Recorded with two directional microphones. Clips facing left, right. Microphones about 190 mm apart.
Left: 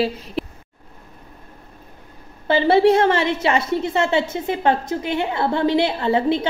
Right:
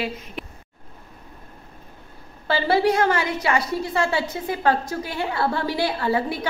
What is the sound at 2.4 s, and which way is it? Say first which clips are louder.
A woman's voice: left 5 dB; 20° left (ahead or behind).